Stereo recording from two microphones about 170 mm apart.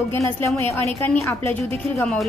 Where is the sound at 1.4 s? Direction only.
35° right (ahead or behind).